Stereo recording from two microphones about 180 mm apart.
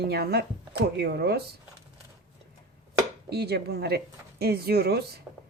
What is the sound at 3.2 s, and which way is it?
Speech, 65° right (ahead or behind).